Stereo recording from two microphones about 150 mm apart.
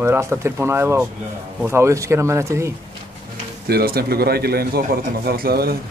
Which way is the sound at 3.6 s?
85° right.